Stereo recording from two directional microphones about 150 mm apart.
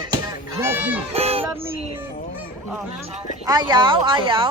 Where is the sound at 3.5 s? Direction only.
30° right (ahead or behind).